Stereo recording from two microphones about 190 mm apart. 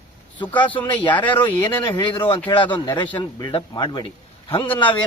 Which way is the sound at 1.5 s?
10° left (ahead or behind).